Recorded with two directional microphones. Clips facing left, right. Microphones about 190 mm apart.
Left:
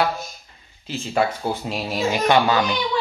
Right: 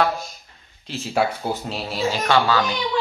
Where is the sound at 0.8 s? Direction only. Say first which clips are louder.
Even; centre (ahead or behind).